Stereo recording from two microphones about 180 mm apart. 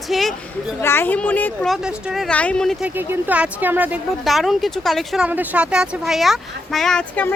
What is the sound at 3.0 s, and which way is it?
A woman's voice, 10° right (ahead or behind).